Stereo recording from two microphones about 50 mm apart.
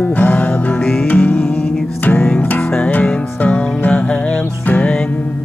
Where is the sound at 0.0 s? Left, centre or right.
Left.